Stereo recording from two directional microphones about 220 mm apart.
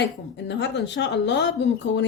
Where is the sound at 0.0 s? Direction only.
50° left (ahead or behind).